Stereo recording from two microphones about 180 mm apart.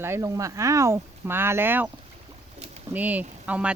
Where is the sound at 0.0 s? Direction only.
15° right (ahead or behind).